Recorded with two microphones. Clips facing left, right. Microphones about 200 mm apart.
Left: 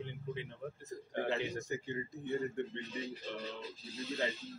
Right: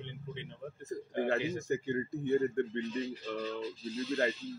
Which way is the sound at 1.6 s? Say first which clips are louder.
Right 7 dB; 50° right (ahead or behind).